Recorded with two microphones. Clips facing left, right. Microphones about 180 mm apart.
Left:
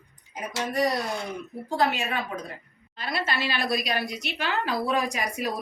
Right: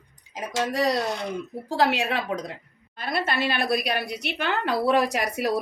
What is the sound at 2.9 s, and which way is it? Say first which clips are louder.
Speech: right 3 dB; 50° right (ahead or behind).